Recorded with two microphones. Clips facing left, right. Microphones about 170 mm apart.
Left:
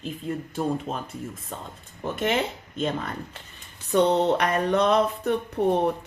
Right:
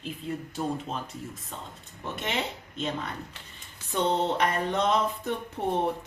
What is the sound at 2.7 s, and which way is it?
Speech, 50° left (ahead or behind).